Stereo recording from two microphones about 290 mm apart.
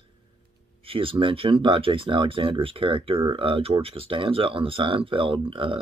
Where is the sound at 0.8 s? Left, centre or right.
Centre.